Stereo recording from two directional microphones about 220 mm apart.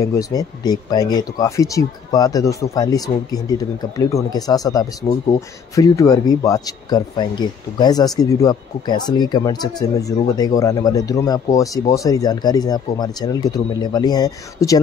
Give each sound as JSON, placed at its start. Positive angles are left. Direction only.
{"t": 0.0, "sound": "speech", "side_deg": 15}